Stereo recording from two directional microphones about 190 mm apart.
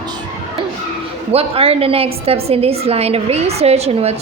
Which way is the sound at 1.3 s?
30° right (ahead or behind).